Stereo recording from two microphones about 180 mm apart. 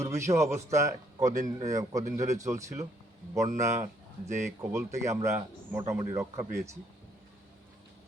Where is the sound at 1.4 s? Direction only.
40° right (ahead or behind).